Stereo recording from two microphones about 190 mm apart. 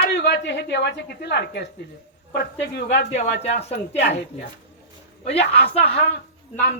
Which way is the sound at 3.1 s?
35° left (ahead or behind).